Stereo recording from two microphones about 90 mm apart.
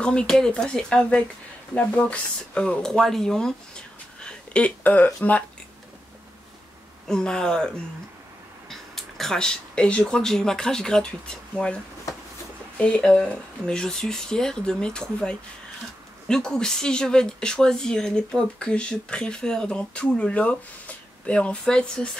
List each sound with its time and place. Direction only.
0.0 s speech: 10° left (ahead or behind)
7.1 s speech: 10° left (ahead or behind)